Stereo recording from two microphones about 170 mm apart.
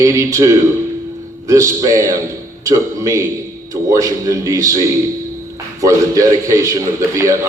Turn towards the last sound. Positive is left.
turn(degrees=-20)  # may be behind; listen again after turning